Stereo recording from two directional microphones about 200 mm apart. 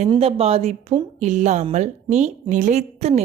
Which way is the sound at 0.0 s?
30° right (ahead or behind).